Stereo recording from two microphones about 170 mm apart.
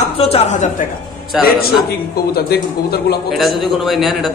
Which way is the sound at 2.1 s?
65° left (ahead or behind).